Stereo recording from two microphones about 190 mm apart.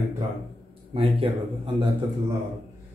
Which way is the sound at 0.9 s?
30° right (ahead or behind).